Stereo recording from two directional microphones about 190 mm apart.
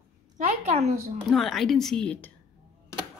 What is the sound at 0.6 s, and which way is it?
Speech, 35° right (ahead or behind).